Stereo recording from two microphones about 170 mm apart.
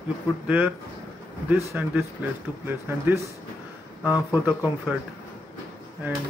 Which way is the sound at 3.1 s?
15° right (ahead or behind).